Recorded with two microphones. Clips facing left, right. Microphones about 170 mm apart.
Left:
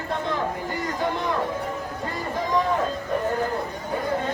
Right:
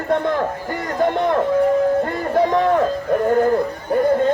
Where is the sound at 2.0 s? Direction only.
55° right (ahead or behind).